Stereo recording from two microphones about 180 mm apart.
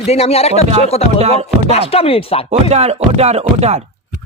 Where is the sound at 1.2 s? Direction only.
35° right (ahead or behind).